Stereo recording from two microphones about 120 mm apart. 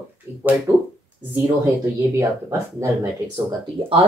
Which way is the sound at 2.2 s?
25° right (ahead or behind).